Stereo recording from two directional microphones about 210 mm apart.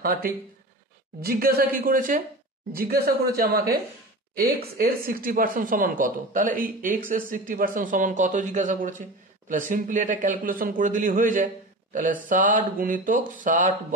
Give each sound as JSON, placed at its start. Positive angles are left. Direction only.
{"t": 0.0, "sound": "a woman's voice", "side_deg": -45}